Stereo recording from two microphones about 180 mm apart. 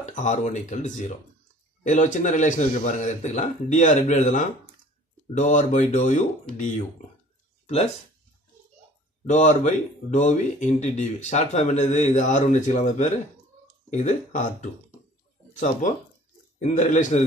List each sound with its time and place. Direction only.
0.0 s a man's voice: 40° left (ahead or behind)
7.6 s speech: 35° left (ahead or behind)
9.2 s a man's voice: 40° left (ahead or behind)